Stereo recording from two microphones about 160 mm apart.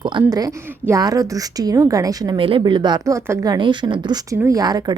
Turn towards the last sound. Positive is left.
turn(degrees=-25)  # may be behind; listen again after turning